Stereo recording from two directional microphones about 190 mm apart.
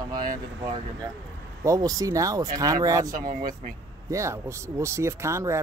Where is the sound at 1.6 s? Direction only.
20° right (ahead or behind).